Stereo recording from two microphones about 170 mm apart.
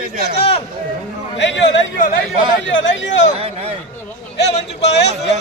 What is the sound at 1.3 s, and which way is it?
Speech, 90° left.